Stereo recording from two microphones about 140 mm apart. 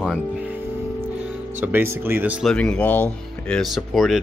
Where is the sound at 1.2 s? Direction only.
15° right (ahead or behind).